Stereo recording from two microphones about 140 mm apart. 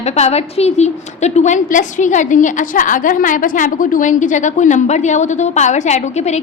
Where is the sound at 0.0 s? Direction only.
50° left (ahead or behind).